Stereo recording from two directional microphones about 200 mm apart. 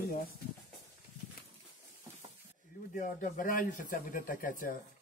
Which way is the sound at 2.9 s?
40° left (ahead or behind).